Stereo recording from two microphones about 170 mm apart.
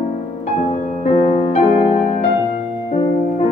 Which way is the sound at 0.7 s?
40° left (ahead or behind).